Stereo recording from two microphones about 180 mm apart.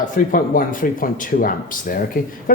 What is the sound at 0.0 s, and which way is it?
Speech, 50° left (ahead or behind).